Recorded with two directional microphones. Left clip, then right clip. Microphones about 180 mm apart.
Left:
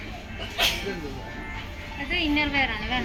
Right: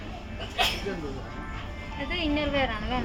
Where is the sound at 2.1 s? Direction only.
90° right.